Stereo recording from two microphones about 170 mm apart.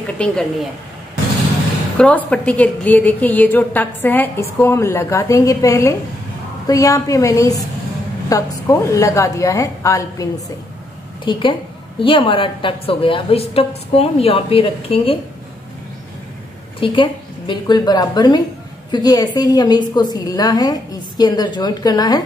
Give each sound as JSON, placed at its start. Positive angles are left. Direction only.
{"t": 0.2, "sound": "a woman's voice", "side_deg": 5}
{"t": 2.0, "sound": "a woman's voice", "side_deg": 10}
{"t": 11.2, "sound": "a woman's voice", "side_deg": 30}
{"t": 16.8, "sound": "a woman's voice", "side_deg": 30}